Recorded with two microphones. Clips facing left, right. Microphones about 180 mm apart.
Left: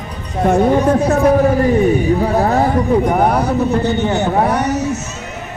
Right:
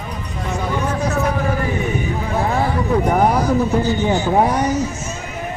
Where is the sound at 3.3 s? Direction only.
65° left (ahead or behind).